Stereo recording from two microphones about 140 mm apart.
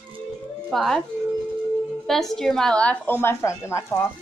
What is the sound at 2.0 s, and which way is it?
A woman's voice, centre (ahead or behind).